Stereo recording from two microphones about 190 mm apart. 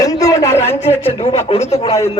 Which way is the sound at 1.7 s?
30° left (ahead or behind).